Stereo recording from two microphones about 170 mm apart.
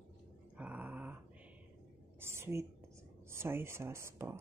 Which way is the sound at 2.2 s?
15° right (ahead or behind).